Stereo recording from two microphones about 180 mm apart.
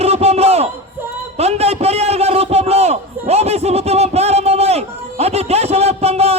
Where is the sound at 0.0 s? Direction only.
35° right (ahead or behind).